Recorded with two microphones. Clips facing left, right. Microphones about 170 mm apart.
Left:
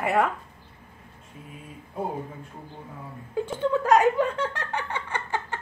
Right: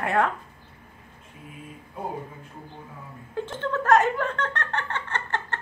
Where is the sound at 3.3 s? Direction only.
10° left (ahead or behind).